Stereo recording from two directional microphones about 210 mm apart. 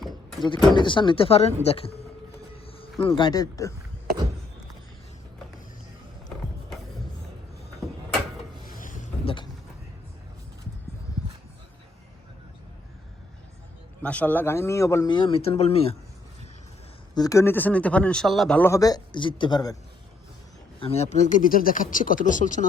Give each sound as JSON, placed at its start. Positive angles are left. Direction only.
{"t": 0.4, "sound": "speech", "side_deg": 20}
{"t": 2.6, "sound": "a sound", "side_deg": 25}
{"t": 3.0, "sound": "speech", "side_deg": 20}
{"t": 8.7, "sound": "boat", "side_deg": 40}
{"t": 9.2, "sound": "a sound", "side_deg": 25}
{"t": 14.0, "sound": "speech", "side_deg": 5}
{"t": 17.2, "sound": "speech", "side_deg": 15}
{"t": 20.7, "sound": "speech", "side_deg": 30}